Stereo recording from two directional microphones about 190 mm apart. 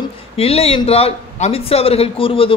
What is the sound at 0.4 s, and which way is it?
Speech, 30° left (ahead or behind).